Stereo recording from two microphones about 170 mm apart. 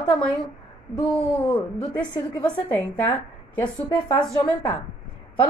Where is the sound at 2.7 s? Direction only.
10° left (ahead or behind).